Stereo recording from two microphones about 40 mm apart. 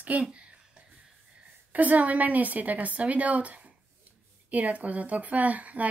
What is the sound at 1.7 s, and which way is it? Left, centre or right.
Speech, right.